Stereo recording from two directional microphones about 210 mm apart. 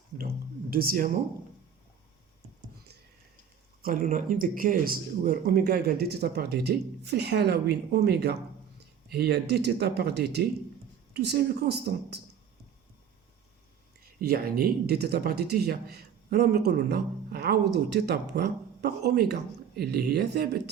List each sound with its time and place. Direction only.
0.7 s speech: 45° right (ahead or behind)
3.8 s speech: 40° right (ahead or behind)
14.0 s speech: 45° right (ahead or behind)